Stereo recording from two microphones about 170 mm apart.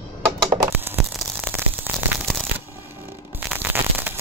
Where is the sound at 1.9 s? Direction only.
10° right (ahead or behind).